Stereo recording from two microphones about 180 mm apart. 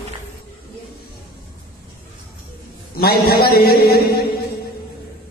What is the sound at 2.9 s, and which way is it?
A man's voice, 60° left (ahead or behind).